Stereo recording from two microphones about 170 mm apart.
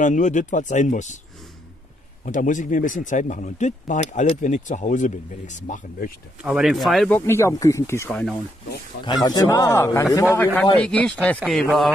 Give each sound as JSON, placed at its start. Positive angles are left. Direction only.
{"t": 0.0, "sound": "speech", "side_deg": 45}
{"t": 2.2, "sound": "speech", "side_deg": 50}
{"t": 6.4, "sound": "speech", "side_deg": -5}
{"t": 7.2, "sound": "speech", "side_deg": 15}
{"t": 9.0, "sound": "a man's voice", "side_deg": 25}